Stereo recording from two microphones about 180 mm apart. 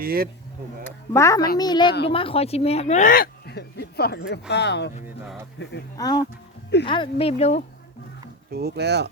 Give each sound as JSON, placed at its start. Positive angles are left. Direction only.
{"t": 0.0, "sound": "speech", "side_deg": -55}
{"t": 0.9, "sound": "a child's voice", "side_deg": 15}
{"t": 6.0, "sound": "a child's voice", "side_deg": 20}
{"t": 8.5, "sound": "speech", "side_deg": -65}